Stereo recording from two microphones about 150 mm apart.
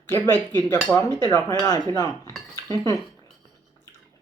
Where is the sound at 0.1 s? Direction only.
15° left (ahead or behind).